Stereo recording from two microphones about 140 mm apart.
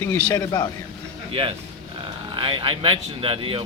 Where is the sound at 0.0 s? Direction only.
15° left (ahead or behind).